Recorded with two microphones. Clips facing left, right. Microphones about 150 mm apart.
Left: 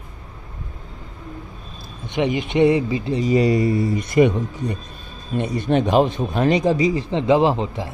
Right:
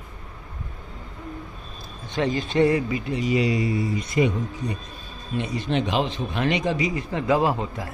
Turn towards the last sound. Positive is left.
turn(degrees=25)  # may be behind; listen again after turning